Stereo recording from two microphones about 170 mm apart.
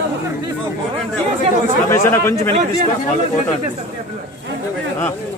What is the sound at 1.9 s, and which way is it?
Speech, 15° left (ahead or behind).